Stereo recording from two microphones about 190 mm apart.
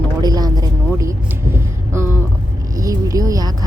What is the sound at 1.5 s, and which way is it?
Vehicle, 10° right (ahead or behind).